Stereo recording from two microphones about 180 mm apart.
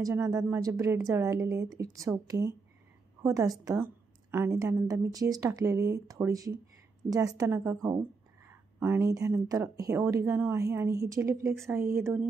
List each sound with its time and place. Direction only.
0.0 s speech: 15° right (ahead or behind)